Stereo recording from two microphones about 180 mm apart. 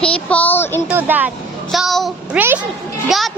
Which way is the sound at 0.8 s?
10° right (ahead or behind).